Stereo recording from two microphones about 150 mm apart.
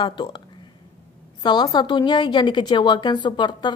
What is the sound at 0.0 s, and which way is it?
Speech, 30° left (ahead or behind).